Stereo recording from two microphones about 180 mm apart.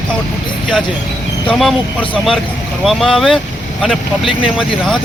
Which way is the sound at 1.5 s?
Centre (ahead or behind).